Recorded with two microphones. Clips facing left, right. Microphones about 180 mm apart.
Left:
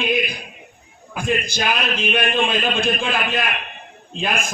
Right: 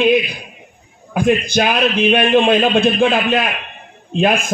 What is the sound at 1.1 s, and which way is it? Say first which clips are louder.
A man's voice: right 8 dB; 60° right (ahead or behind).